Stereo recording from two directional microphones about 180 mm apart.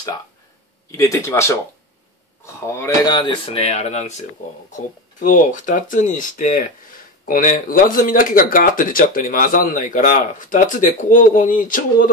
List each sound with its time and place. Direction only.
0.9 s speech: 15° left (ahead or behind)
3.2 s speech: 30° left (ahead or behind); by 12.1 s 50° left (ahead or behind)